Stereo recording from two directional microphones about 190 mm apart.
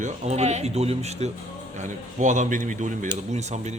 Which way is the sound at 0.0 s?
35° right (ahead or behind).